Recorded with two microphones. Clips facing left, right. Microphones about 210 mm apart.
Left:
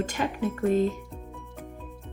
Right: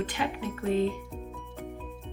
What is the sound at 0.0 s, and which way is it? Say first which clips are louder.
Music: left 2 dB; 45° left (ahead or behind).